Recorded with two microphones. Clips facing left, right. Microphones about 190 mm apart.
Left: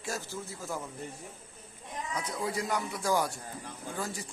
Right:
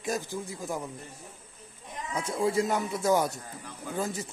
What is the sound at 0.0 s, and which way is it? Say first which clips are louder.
Speech: right 5 dB; 15° right (ahead or behind).